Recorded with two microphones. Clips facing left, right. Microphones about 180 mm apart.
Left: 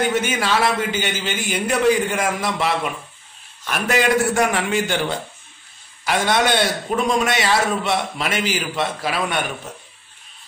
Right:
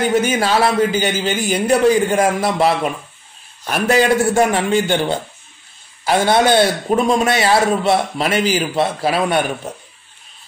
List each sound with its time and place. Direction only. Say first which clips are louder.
0.1 s a man's voice: right 5 dB; 35° right (ahead or behind)